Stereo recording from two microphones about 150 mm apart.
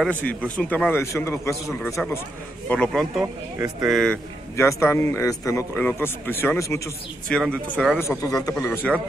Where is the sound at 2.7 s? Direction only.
5° left (ahead or behind).